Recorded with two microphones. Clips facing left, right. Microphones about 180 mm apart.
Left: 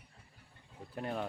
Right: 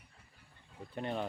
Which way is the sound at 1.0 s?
5° left (ahead or behind).